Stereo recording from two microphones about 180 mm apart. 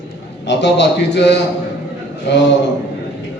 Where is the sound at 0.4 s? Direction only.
75° left (ahead or behind).